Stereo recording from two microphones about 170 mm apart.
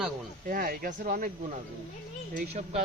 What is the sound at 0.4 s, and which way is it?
Speech, 55° right (ahead or behind).